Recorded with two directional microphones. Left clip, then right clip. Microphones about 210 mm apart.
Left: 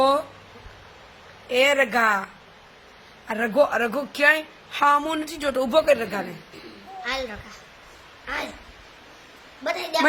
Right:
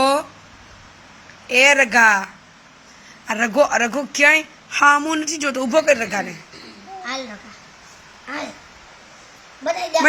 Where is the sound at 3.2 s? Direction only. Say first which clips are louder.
Right 4 dB; centre (ahead or behind).